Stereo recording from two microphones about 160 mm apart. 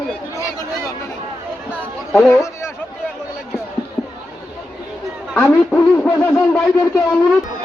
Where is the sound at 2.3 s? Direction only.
15° left (ahead or behind).